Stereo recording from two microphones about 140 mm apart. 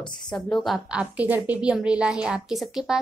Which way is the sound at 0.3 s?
5° left (ahead or behind).